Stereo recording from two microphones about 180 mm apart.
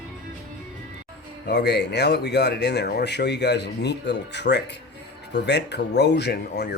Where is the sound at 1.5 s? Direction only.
70° left (ahead or behind).